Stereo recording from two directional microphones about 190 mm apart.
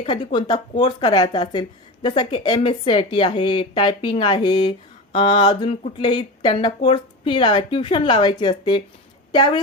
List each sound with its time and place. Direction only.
0.0 s a woman's voice: 25° left (ahead or behind)